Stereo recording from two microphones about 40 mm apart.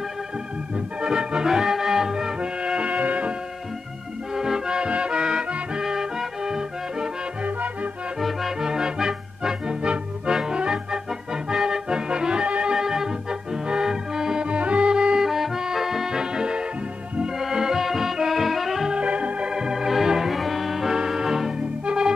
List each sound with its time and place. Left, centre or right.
0.7 s organ: right
1.5 s music: centre; by 3.3 s right
4.4 s music: centre
7.4 s music: right
8.2 s music: centre
8.5 s music: centre
11.4 s accordion: centre
12.7 s organ: centre
14.5 s music: right
15.1 s music: centre
18.9 s organ: right
19.5 s music: centre